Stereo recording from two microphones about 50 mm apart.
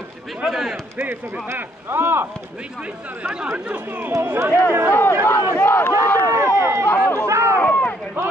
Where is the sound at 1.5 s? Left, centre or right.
Right.